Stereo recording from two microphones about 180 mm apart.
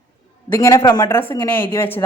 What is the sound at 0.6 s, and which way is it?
A woman's voice, 20° left (ahead or behind).